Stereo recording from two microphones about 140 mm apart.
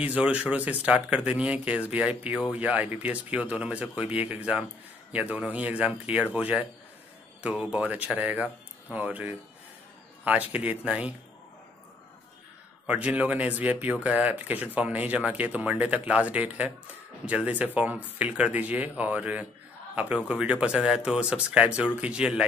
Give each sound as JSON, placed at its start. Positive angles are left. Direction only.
{"t": 0.0, "sound": "speech", "side_deg": -10}
{"t": 12.8, "sound": "speech", "side_deg": -10}